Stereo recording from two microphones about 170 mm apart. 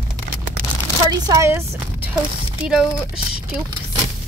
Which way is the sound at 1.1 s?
25° right (ahead or behind).